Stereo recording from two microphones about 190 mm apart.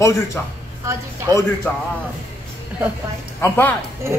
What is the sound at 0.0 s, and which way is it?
Speech, 15° left (ahead or behind).